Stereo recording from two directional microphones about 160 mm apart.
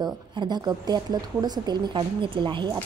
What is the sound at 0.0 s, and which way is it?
A woman's voice, 25° right (ahead or behind).